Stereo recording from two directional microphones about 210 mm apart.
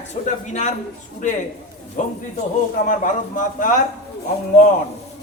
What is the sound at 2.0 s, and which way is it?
A man's voice, 35° left (ahead or behind).